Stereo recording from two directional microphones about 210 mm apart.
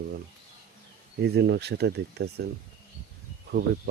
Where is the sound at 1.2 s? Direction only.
50° right (ahead or behind).